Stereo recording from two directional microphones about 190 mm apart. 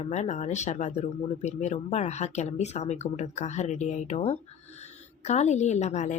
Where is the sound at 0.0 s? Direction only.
35° left (ahead or behind).